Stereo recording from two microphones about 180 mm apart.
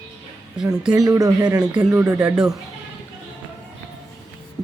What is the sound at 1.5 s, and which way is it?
Speech, 5° right (ahead or behind).